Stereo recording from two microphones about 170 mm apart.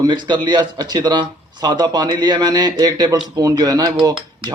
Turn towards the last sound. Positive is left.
turn(degrees=-30)  # may be behind; listen again after turning